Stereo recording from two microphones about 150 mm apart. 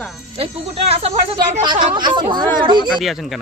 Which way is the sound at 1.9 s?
30° right (ahead or behind).